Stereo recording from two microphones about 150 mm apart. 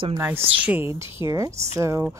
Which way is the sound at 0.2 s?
10° right (ahead or behind).